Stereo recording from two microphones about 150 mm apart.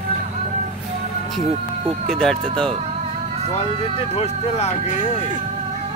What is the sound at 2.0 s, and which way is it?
Speech, 5° left (ahead or behind).